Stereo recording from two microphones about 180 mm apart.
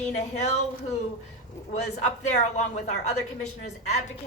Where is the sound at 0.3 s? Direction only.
40° left (ahead or behind).